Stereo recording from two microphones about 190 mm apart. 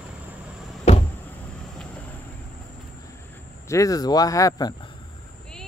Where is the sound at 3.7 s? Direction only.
15° left (ahead or behind).